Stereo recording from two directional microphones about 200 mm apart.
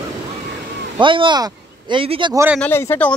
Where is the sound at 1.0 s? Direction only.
25° right (ahead or behind).